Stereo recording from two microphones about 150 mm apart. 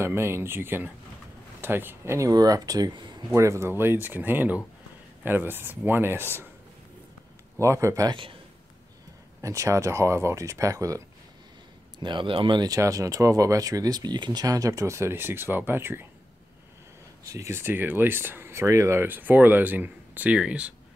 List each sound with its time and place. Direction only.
0.0 s speech: 15° right (ahead or behind)
3.3 s speech: 20° right (ahead or behind)
7.6 s speech: 20° right (ahead or behind)
9.4 s speech: 20° right (ahead or behind)
12.0 s speech: 30° right (ahead or behind); by 16.1 s 15° right (ahead or behind)
17.2 s speech: 20° right (ahead or behind)